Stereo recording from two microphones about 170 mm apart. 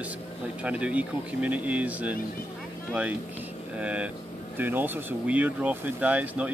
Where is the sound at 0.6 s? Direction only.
5° right (ahead or behind).